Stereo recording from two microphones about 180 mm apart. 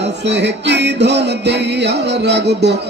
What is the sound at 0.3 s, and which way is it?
Music, 70° right (ahead or behind).